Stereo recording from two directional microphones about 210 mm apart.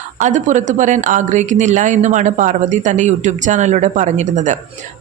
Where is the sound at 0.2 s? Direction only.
35° right (ahead or behind).